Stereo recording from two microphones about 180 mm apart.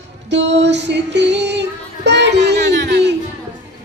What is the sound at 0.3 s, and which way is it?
Female singing, 80° right.